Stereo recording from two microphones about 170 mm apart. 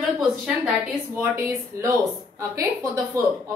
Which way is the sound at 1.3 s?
15° right (ahead or behind).